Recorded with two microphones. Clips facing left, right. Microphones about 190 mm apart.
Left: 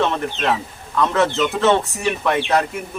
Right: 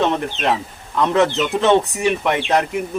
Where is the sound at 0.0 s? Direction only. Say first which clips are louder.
Right 1 dB; 20° right (ahead or behind).